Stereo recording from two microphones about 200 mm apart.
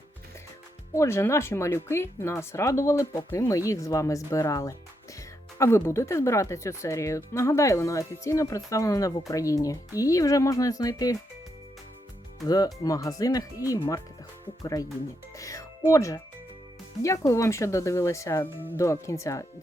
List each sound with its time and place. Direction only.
0.9 s speech: 15° left (ahead or behind)
12.5 s speech: 20° left (ahead or behind)
15.4 s music: 15° left (ahead or behind)
15.9 s speech: 15° left (ahead or behind)